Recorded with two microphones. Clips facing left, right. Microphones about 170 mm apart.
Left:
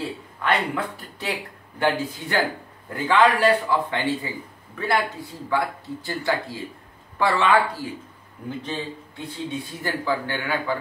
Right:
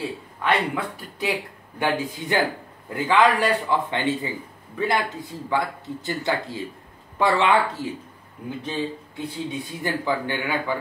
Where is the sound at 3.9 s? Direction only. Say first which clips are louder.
Right 1 dB; 20° right (ahead or behind).